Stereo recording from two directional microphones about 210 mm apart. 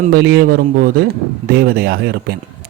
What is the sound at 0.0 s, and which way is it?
Speech, 50° right (ahead or behind).